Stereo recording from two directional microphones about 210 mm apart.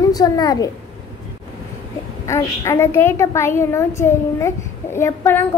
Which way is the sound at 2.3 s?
15° left (ahead or behind).